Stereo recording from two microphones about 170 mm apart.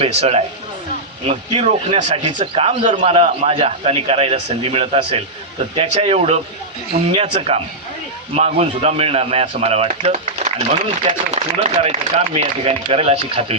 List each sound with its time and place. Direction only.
0.0 s speech: 35° right (ahead or behind)